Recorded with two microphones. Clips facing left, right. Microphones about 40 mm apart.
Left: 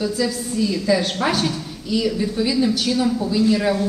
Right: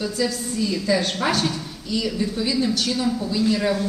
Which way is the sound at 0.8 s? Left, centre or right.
Centre.